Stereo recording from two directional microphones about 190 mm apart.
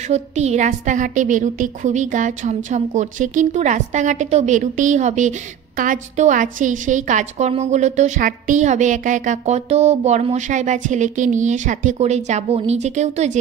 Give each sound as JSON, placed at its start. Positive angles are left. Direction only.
{"t": 0.1, "sound": "a woman's voice", "side_deg": -35}